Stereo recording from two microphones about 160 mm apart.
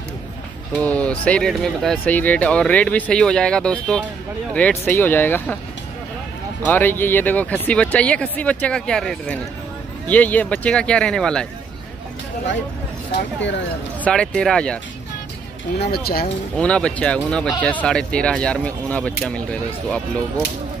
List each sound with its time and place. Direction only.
0.7 s music: 10° left (ahead or behind)
1.2 s speech: 5° left (ahead or behind)
6.6 s speech: 10° left (ahead or behind)
14.0 s speech: 5° left (ahead or behind)
15.9 s speech: 70° left (ahead or behind)
16.5 s speech: 5° left (ahead or behind)